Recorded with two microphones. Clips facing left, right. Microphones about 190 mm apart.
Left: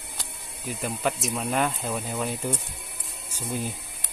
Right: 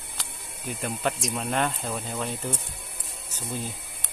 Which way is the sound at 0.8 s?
Centre (ahead or behind).